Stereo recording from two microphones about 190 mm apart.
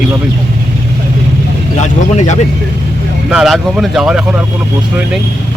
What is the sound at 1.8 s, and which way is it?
Speech, 40° left (ahead or behind).